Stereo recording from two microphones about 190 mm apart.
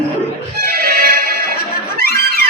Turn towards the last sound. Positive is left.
turn(degrees=-50)  # may be behind; listen again after turning